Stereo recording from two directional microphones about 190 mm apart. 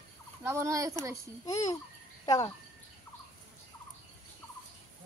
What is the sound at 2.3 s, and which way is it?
Speech, 20° left (ahead or behind).